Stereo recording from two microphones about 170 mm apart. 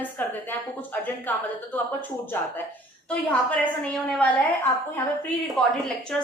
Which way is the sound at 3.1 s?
10° left (ahead or behind).